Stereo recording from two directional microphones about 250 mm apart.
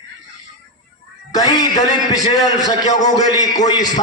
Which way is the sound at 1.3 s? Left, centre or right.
Centre.